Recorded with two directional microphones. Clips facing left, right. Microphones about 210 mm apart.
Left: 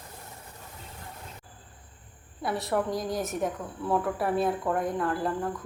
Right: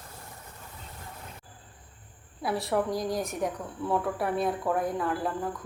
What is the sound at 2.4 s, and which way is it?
A woman's voice, centre (ahead or behind).